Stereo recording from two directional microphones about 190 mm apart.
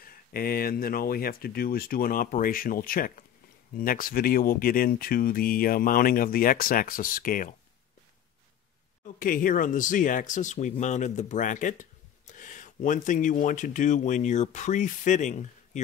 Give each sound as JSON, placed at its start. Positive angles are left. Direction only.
{"t": 0.0, "sound": "speech", "side_deg": 50}
{"t": 9.0, "sound": "speech", "side_deg": 45}